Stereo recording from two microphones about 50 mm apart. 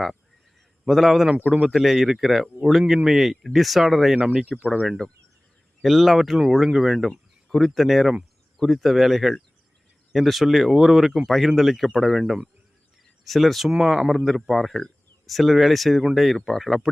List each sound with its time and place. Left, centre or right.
0.9 s speech: centre
4.1 s speech: centre
5.8 s speech: centre